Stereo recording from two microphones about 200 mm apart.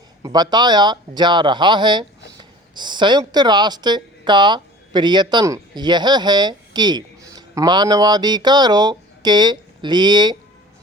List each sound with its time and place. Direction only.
0.2 s speech: 20° right (ahead or behind)